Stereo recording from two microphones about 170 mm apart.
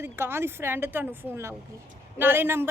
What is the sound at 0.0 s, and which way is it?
A woman's voice, 15° right (ahead or behind).